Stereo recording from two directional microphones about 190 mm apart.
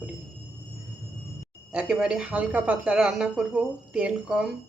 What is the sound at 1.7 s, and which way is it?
Speech, 5° right (ahead or behind).